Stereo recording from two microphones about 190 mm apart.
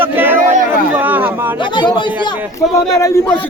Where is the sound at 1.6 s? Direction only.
25° left (ahead or behind).